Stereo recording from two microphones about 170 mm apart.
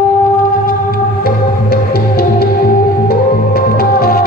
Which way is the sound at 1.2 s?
65° left (ahead or behind).